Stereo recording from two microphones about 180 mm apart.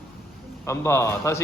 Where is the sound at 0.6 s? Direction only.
15° left (ahead or behind).